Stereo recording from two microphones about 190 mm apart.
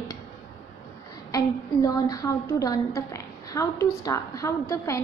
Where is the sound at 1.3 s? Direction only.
20° left (ahead or behind).